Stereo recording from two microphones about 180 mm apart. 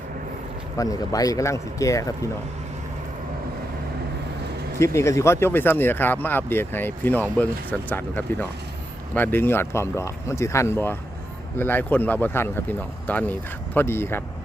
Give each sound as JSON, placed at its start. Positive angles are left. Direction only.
{"t": 0.8, "sound": "speech", "side_deg": 20}
{"t": 4.8, "sound": "speech", "side_deg": 15}